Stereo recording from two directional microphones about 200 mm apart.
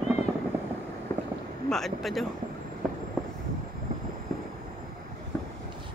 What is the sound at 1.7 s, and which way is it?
Speech, centre (ahead or behind).